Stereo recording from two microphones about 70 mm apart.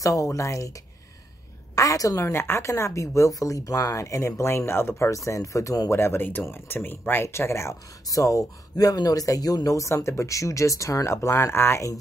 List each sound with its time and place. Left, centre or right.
0.0 s speech: left
1.8 s speech: left
5.9 s speech: left
8.1 s speech: left
11.1 s speech: left